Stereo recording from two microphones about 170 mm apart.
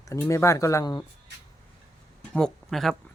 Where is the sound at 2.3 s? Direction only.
5° left (ahead or behind).